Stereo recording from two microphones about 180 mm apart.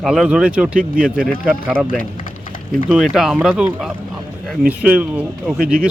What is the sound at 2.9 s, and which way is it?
Speech, centre (ahead or behind).